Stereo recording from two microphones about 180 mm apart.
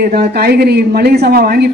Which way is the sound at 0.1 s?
60° right (ahead or behind).